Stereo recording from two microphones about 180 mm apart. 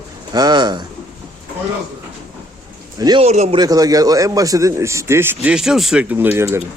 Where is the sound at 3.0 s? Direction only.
25° right (ahead or behind).